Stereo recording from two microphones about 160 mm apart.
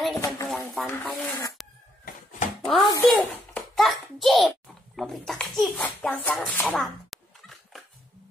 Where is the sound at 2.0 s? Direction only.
50° left (ahead or behind).